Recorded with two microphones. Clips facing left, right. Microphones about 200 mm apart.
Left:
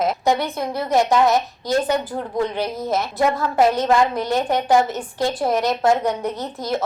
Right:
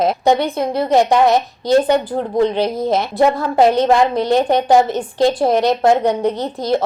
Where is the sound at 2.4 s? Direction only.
30° right (ahead or behind).